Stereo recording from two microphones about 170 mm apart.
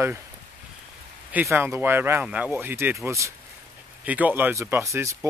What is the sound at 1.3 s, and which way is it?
Speech, 10° right (ahead or behind).